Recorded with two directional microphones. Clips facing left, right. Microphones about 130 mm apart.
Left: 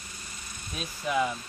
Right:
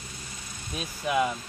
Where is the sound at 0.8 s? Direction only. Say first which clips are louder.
Right 2 dB; 10° right (ahead or behind).